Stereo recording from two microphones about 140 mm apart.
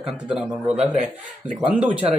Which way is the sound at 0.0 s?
5° right (ahead or behind).